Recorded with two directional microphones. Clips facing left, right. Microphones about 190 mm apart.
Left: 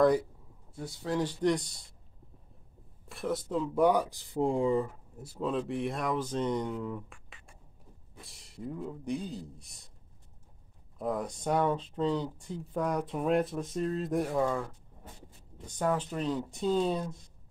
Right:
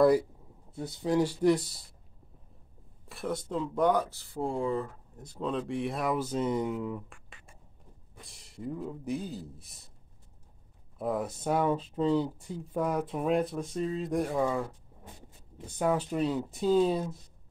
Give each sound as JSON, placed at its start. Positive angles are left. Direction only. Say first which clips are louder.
{"t": 0.7, "sound": "speech", "louder": "right 4 dB", "side_deg": -20}
{"t": 3.1, "sound": "speech", "louder": "left 1 dB", "side_deg": 0}
{"t": 11.0, "sound": "speech", "louder": "right 2 dB", "side_deg": -5}